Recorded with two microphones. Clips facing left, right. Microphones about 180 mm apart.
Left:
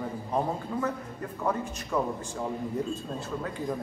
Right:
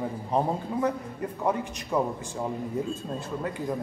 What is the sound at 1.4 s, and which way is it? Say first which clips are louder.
Speech: right 2 dB; 15° right (ahead or behind).